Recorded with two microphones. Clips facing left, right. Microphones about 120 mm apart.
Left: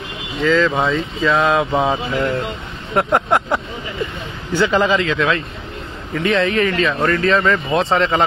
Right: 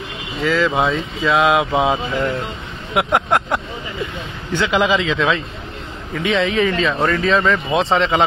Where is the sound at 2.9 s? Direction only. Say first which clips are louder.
Left 1 dB; 5° right (ahead or behind).